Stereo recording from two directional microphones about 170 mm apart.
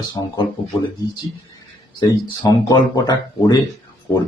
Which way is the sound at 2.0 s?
25° left (ahead or behind).